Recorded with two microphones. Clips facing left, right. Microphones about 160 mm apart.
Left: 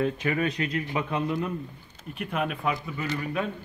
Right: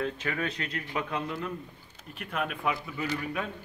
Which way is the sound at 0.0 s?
10° left (ahead or behind).